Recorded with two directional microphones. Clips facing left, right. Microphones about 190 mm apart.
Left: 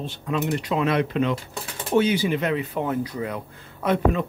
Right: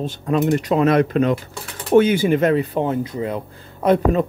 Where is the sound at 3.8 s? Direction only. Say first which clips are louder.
Right 5 dB; 40° right (ahead or behind).